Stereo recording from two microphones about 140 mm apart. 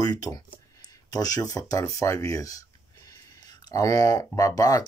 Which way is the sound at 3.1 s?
25° left (ahead or behind).